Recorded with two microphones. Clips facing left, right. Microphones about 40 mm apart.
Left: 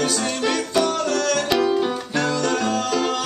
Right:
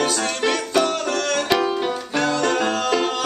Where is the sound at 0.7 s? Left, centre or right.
Centre.